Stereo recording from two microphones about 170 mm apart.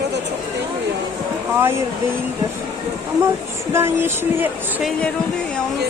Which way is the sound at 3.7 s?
15° right (ahead or behind).